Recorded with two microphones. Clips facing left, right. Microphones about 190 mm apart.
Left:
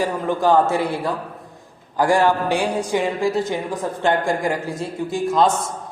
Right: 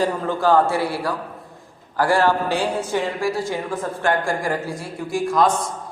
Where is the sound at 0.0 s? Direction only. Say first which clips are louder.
Left 1 dB; 15° left (ahead or behind).